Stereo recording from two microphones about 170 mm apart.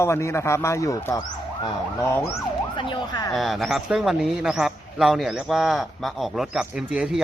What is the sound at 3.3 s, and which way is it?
A man's voice, centre (ahead or behind).